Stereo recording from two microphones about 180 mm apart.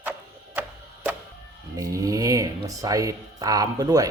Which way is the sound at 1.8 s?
20° right (ahead or behind).